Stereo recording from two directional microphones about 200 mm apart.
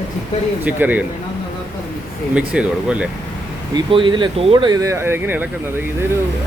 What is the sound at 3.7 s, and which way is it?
Speech, 25° right (ahead or behind).